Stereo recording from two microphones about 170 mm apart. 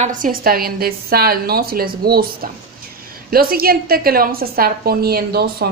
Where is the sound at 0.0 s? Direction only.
50° right (ahead or behind).